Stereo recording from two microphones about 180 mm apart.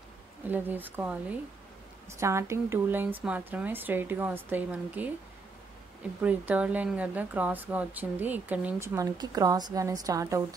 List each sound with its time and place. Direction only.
0.5 s speech: 10° right (ahead or behind)
6.2 s speech: 10° right (ahead or behind)